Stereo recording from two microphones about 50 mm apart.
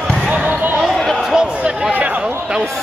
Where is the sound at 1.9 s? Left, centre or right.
Right.